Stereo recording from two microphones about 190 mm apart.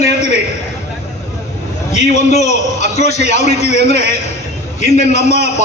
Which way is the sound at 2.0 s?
35° left (ahead or behind).